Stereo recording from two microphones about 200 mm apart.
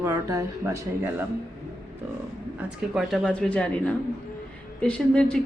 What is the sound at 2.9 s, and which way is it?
Speech, centre (ahead or behind).